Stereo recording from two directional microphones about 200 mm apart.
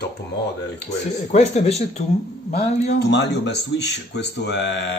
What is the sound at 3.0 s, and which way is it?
Speech, 60° left (ahead or behind).